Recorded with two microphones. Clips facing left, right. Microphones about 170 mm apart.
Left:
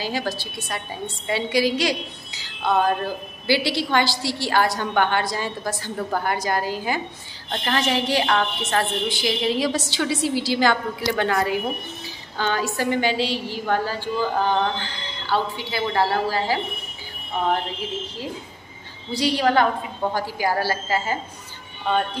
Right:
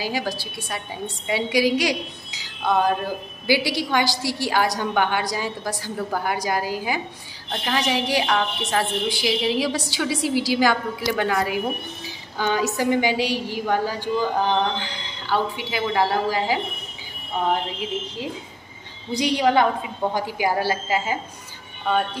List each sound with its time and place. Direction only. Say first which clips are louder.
0.0 s a woman's voice: even; 10° right (ahead or behind)
19.1 s a woman's voice: right 1 dB; 20° right (ahead or behind)